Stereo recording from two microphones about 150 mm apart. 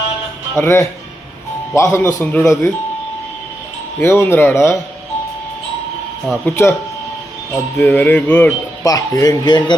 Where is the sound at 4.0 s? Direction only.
15° left (ahead or behind).